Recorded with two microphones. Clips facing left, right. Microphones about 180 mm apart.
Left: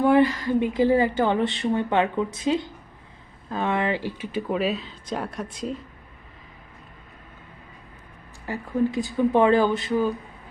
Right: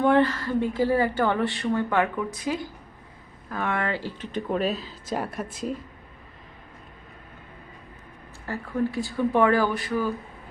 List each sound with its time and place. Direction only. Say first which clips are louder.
0.0 s a woman's voice: left 2 dB; 10° left (ahead or behind)
8.4 s a woman's voice: left 3 dB; 15° left (ahead or behind)